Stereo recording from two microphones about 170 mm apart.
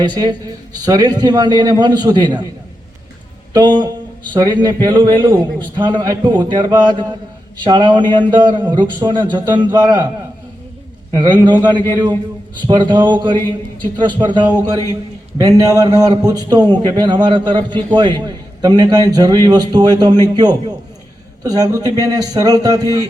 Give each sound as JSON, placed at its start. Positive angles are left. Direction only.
{"t": 0.0, "sound": "a man's voice", "side_deg": -25}
{"t": 3.5, "sound": "a man's voice", "side_deg": -25}
{"t": 11.1, "sound": "a man's voice", "side_deg": -25}